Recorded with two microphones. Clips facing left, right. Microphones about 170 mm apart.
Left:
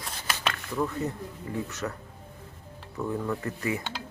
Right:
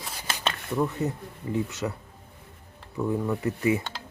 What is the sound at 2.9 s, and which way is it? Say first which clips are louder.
Speech: right 3 dB; 15° right (ahead or behind).